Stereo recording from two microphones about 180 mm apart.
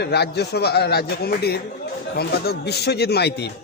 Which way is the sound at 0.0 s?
65° left (ahead or behind).